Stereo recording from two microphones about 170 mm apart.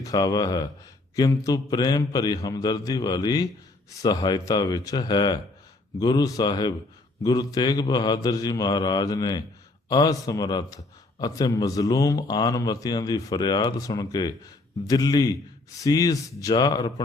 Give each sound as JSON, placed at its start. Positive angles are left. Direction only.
{"t": 0.0, "sound": "a man's voice", "side_deg": 20}